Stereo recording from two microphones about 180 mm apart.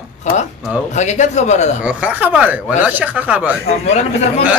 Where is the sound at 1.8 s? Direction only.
10° right (ahead or behind).